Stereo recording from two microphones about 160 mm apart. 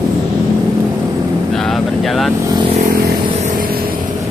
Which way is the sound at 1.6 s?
Centre (ahead or behind).